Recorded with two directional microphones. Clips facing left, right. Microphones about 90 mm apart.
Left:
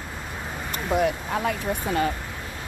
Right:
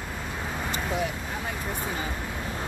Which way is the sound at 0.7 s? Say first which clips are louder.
Left 8 dB; 60° left (ahead or behind).